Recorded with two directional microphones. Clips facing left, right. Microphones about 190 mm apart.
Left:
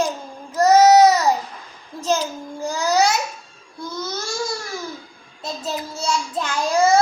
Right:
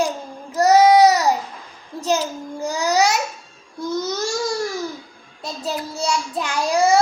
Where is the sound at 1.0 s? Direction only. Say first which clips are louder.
Even; 15° right (ahead or behind).